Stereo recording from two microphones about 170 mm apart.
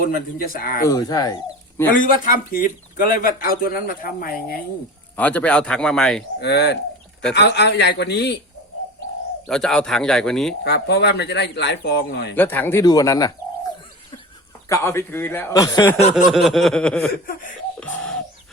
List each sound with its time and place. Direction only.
0.0 s speech: 60° left (ahead or behind)
0.9 s speech: 20° left (ahead or behind)
2.0 s a man's voice: 55° left (ahead or behind)
5.1 s a man's voice: 10° left (ahead or behind)
6.4 s speech: 75° left (ahead or behind)
7.3 s speech: 90° left
9.5 s a man's voice: 5° left (ahead or behind)
10.6 s speech: 80° left
12.4 s speech: 10° left (ahead or behind)
14.7 s a man's voice: 15° left (ahead or behind)
16.1 s a man's voice: centre (ahead or behind)
17.7 s a sound: 5° left (ahead or behind)